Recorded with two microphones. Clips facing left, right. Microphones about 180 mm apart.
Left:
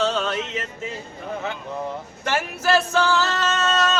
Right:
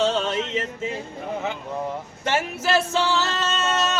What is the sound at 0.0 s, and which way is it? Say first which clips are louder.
Music: right 1 dB; 25° right (ahead or behind).